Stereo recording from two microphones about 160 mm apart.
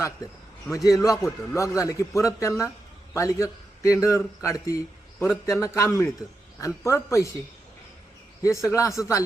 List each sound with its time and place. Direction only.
0.7 s a man's voice: 20° left (ahead or behind)
8.4 s a man's voice: 20° left (ahead or behind)